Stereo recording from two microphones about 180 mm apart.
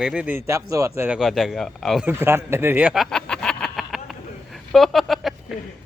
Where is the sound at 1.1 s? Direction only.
Centre (ahead or behind).